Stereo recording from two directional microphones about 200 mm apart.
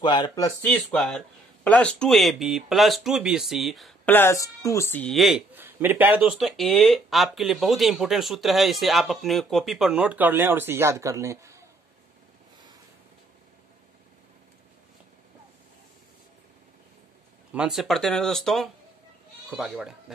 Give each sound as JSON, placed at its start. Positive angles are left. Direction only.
{"t": 0.0, "sound": "speech", "side_deg": 25}
{"t": 0.7, "sound": "speech", "side_deg": 5}
{"t": 17.5, "sound": "speech", "side_deg": -5}